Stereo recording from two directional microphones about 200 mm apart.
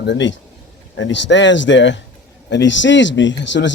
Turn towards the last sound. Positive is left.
turn(degrees=65)  # may be behind; listen again after turning